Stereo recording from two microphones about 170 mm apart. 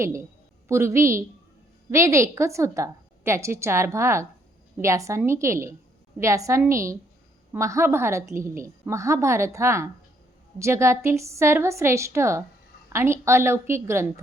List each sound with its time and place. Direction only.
0.0 s a woman's voice: 15° right (ahead or behind)